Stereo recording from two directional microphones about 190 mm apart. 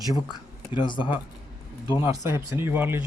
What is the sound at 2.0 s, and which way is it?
Speech, 15° right (ahead or behind).